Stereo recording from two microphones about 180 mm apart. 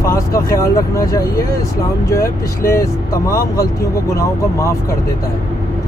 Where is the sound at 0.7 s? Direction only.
15° left (ahead or behind).